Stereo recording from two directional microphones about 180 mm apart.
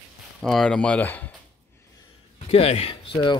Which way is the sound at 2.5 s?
35° left (ahead or behind).